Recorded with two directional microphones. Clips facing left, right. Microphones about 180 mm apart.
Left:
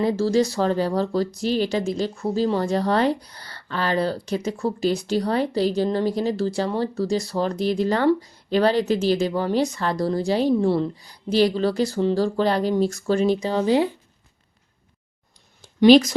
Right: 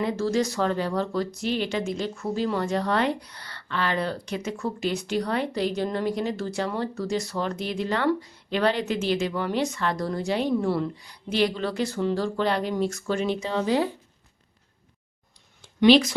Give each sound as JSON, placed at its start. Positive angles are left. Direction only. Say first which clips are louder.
{"t": 0.0, "sound": "speech", "louder": "left 5 dB", "side_deg": 35}
{"t": 15.6, "sound": "speech", "louder": "left 4 dB", "side_deg": 40}